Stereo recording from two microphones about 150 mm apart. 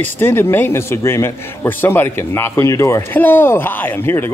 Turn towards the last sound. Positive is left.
turn(degrees=15)  # may be behind; listen again after turning